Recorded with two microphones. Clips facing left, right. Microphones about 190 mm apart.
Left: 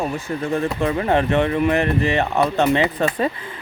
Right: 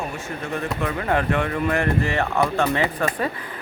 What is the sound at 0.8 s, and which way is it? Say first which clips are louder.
Speech: left 3 dB; 25° left (ahead or behind).